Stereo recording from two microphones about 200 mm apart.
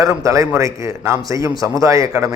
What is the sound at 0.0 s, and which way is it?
A man's voice, 15° right (ahead or behind).